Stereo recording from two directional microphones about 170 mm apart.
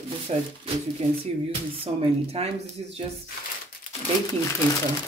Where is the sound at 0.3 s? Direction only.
35° right (ahead or behind).